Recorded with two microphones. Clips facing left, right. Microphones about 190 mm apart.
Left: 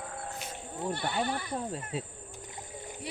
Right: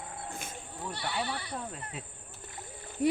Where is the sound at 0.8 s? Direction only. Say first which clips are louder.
Left 4 dB; 50° left (ahead or behind).